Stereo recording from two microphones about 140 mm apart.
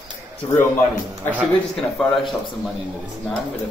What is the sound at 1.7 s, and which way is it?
Speech, 5° left (ahead or behind).